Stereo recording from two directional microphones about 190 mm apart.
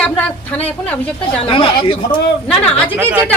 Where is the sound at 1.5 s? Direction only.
25° left (ahead or behind).